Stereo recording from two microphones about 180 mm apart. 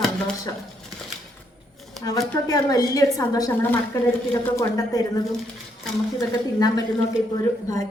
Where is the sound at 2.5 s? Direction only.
20° left (ahead or behind).